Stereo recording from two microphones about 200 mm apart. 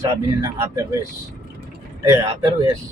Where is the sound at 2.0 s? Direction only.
20° right (ahead or behind).